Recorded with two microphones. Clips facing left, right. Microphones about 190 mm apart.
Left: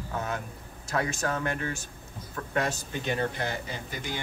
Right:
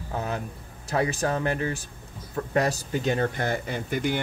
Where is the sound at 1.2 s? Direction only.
35° right (ahead or behind); by 4.2 s 60° right (ahead or behind).